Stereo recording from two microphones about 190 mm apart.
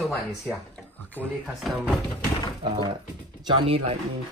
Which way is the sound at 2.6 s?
25° right (ahead or behind).